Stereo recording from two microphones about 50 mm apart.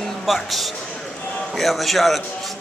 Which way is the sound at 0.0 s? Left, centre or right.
Centre.